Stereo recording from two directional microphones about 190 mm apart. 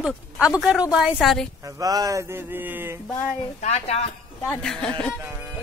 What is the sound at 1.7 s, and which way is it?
Speech, 20° right (ahead or behind).